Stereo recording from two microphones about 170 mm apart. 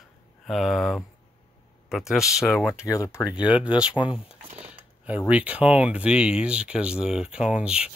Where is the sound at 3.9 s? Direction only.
30° left (ahead or behind).